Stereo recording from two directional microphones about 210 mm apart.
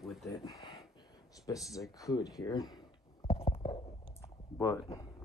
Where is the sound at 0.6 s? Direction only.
Centre (ahead or behind).